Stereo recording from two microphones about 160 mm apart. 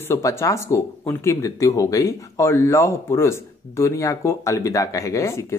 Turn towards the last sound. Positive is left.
turn(degrees=20)  # may be behind; listen again after turning